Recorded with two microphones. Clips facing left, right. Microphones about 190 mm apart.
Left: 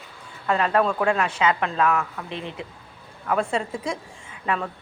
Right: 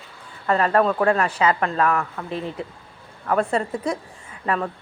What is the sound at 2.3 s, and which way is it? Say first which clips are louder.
Speech: right 6 dB; 40° right (ahead or behind).